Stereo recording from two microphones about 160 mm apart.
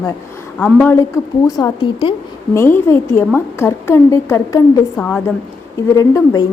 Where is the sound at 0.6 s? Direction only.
10° left (ahead or behind).